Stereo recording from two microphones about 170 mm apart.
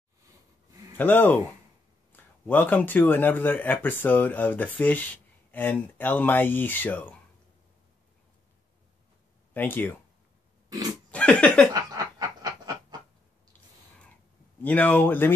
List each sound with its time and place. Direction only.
0.9 s speech: 10° left (ahead or behind)
9.5 s speech: 10° left (ahead or behind)
11.1 s a sound: 5° left (ahead or behind)
11.7 s snicker: 25° right (ahead or behind)
14.6 s speech: 10° left (ahead or behind)